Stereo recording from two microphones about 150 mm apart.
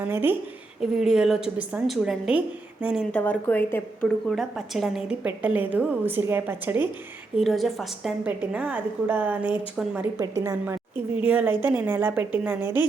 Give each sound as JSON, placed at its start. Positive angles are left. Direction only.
{"t": 0.0, "sound": "a woman's voice", "side_deg": -15}
{"t": 0.8, "sound": "a woman's voice", "side_deg": -5}
{"t": 3.1, "sound": "a woman's voice", "side_deg": 10}
{"t": 4.3, "sound": "a woman's voice", "side_deg": 0}
{"t": 7.3, "sound": "a woman's voice", "side_deg": 0}
{"t": 10.2, "sound": "a woman's voice", "side_deg": -20}